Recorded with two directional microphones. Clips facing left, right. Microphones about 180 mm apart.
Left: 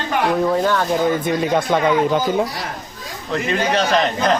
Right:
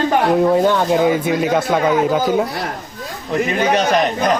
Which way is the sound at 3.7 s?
15° right (ahead or behind).